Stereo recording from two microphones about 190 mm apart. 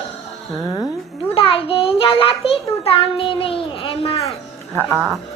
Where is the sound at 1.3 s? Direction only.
30° left (ahead or behind).